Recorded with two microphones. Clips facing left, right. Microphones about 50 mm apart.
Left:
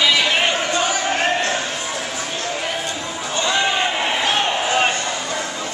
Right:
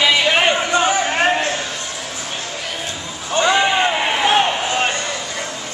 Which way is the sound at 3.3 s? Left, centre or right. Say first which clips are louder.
Right 5 dB; right.